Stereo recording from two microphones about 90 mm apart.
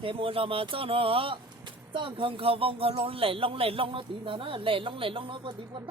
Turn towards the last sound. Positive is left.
turn(degrees=-75)  # may be behind; listen again after turning